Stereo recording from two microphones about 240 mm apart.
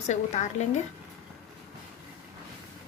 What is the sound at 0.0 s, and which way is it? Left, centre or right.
Speech, left.